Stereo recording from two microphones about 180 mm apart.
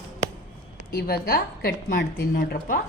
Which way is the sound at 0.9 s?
60° left (ahead or behind).